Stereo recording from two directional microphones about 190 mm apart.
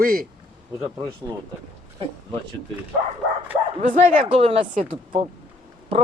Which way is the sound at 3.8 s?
40° right (ahead or behind).